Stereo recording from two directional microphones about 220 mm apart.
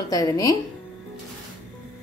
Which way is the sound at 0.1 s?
15° left (ahead or behind).